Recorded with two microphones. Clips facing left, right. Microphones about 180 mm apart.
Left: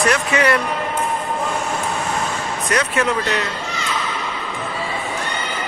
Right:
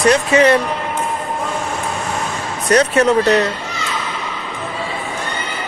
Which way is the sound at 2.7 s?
35° right (ahead or behind).